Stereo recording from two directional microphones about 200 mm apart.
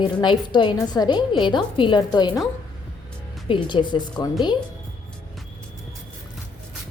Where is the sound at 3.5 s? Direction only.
25° left (ahead or behind).